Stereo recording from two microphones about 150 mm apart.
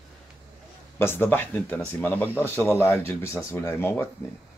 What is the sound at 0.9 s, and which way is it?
Speech, 15° left (ahead or behind).